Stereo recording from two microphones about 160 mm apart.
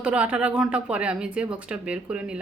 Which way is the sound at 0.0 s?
5° right (ahead or behind).